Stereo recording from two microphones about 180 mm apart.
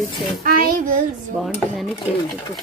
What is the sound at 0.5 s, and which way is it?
Speech, 55° right (ahead or behind).